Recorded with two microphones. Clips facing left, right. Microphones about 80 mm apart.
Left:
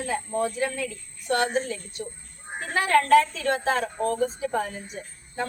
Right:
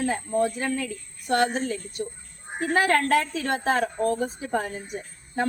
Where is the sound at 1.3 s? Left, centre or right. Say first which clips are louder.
Right 2 dB; right.